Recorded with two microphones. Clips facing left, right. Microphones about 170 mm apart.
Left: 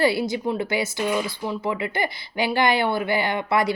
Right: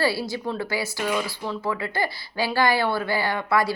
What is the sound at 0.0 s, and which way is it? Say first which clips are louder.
Speech: left 3 dB; 20° left (ahead or behind).